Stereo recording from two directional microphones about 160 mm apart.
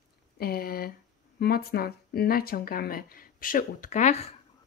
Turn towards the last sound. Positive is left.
turn(degrees=45)  # may be behind; listen again after turning